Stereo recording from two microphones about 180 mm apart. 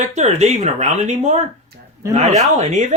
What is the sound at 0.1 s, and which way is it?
Speech, 40° right (ahead or behind).